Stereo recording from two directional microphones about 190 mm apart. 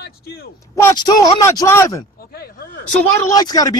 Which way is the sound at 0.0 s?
55° left (ahead or behind).